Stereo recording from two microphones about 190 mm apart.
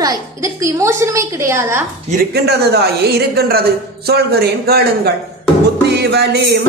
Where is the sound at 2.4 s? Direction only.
60° right (ahead or behind).